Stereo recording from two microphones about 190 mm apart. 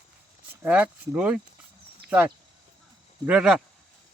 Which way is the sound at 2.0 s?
5° right (ahead or behind).